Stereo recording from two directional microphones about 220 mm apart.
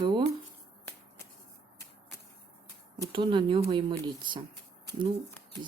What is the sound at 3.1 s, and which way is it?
Speech, 20° right (ahead or behind).